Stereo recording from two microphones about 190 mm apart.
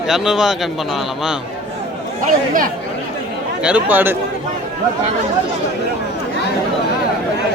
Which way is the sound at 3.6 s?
10° right (ahead or behind).